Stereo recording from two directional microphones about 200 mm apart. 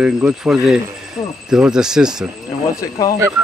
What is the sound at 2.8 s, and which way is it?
Speech, 15° left (ahead or behind).